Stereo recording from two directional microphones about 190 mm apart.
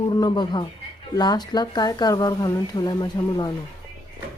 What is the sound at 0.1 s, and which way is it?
Speech, 25° left (ahead or behind).